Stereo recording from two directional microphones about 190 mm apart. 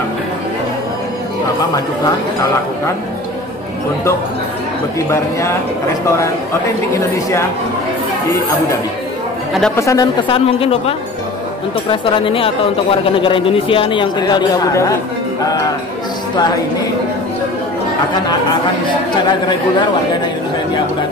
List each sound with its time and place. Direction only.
9.8 s a woman's voice: 15° left (ahead or behind)
10.2 s a man's voice: 30° left (ahead or behind)